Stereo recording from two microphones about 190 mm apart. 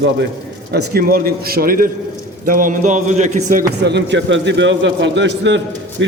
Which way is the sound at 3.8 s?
65° right (ahead or behind).